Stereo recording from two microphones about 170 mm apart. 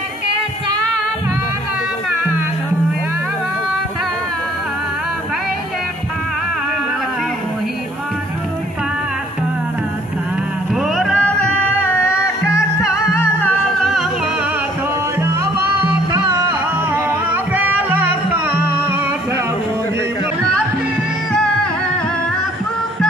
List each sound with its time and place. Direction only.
10.7 s music: centre (ahead or behind)
15.1 s music: 15° right (ahead or behind)
16.9 s music: 10° right (ahead or behind)